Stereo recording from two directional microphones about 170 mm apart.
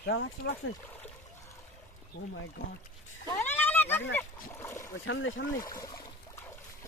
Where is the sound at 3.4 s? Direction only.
10° left (ahead or behind).